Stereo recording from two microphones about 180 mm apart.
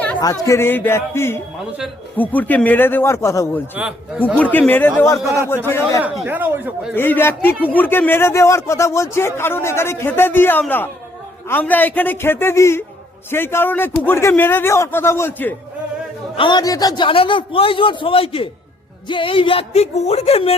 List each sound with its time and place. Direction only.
0.2 s speech: 20° left (ahead or behind)
6.0 s speech: 10° right (ahead or behind)
6.9 s speech: 10° left (ahead or behind)
16.4 s a man's voice: 25° left (ahead or behind)